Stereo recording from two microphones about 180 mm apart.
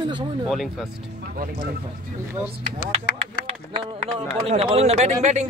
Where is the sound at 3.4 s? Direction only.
35° right (ahead or behind).